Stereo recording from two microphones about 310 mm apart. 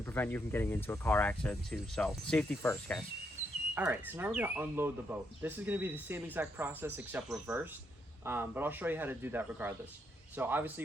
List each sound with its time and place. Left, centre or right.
0.0 s speech: centre
3.8 s speech: centre